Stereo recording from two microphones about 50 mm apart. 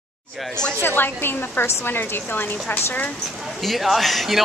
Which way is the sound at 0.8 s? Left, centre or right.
Left.